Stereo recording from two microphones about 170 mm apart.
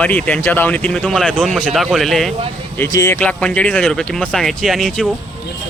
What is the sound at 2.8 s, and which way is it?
Speech, 20° left (ahead or behind).